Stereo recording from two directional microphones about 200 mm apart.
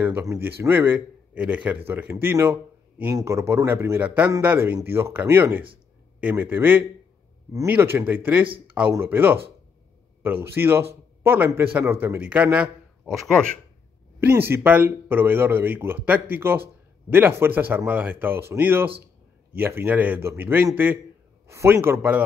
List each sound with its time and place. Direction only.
0.0 s a man's voice: 15° right (ahead or behind); by 13.5 s 5° left (ahead or behind)
14.5 s a man's voice: 10° right (ahead or behind)